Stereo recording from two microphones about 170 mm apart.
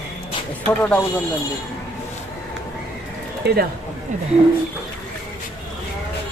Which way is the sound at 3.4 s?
75° right (ahead or behind).